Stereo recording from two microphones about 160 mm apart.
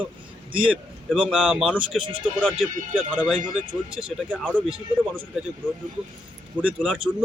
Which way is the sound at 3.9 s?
Centre (ahead or behind).